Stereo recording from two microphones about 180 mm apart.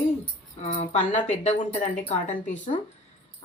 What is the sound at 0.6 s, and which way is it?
Speech, 40° left (ahead or behind).